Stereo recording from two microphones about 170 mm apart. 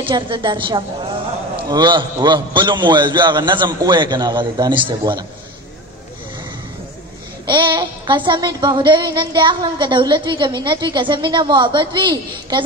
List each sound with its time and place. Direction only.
0.0 s child singing: 30° right (ahead or behind)
7.4 s child singing: 25° right (ahead or behind)